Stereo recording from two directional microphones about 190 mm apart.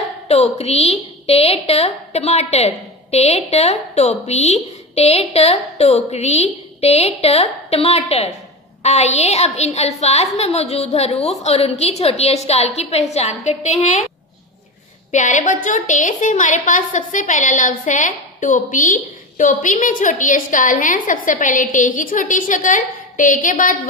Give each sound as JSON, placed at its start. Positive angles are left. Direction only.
{"t": 0.3, "sound": "a woman's voice", "side_deg": 35}
{"t": 15.0, "sound": "a woman's voice", "side_deg": 40}